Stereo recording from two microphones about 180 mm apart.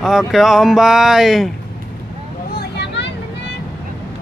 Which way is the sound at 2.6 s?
70° left (ahead or behind).